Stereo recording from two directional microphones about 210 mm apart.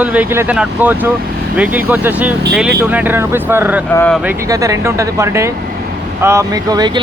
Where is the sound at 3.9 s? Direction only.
10° left (ahead or behind).